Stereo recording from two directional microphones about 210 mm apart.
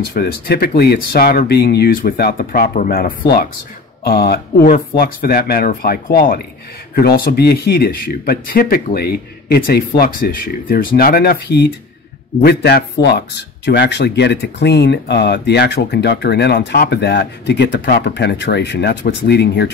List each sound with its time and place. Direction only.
0.1 s speech: 45° left (ahead or behind)